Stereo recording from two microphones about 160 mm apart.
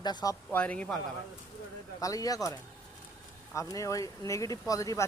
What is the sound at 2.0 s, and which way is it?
Speech, 20° left (ahead or behind).